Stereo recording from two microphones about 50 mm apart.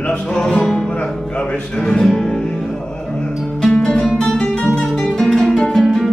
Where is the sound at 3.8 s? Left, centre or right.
Centre.